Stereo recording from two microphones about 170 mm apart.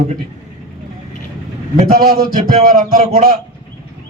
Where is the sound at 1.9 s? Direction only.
55° right (ahead or behind).